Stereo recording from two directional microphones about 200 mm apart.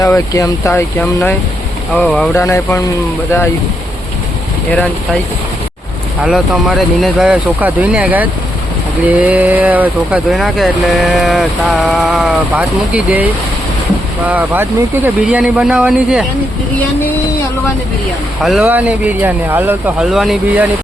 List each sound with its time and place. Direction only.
0.0 s speech: 15° left (ahead or behind)
6.2 s speech: centre (ahead or behind)
14.3 s speech: 10° right (ahead or behind)
18.4 s speech: 5° right (ahead or behind)